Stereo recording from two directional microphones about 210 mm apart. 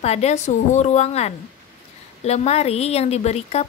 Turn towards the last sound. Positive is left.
turn(degrees=30)  # may be behind; listen again after turning